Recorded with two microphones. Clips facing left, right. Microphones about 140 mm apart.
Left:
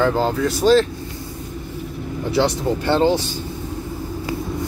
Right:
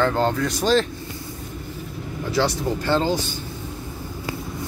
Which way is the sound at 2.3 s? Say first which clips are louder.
Left 3 dB; 25° left (ahead or behind).